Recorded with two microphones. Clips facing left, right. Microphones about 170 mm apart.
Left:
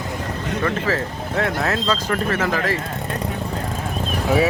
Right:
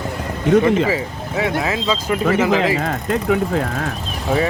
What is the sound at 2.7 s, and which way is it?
Speech, 90° right.